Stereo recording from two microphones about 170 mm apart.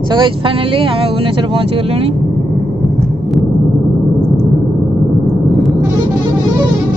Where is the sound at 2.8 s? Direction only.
Centre (ahead or behind).